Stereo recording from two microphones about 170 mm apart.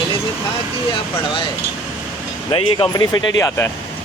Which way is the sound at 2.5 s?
30° left (ahead or behind).